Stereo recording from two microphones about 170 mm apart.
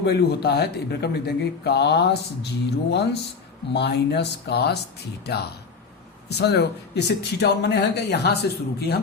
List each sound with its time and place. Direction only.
0.0 s a man's voice: 75° left (ahead or behind)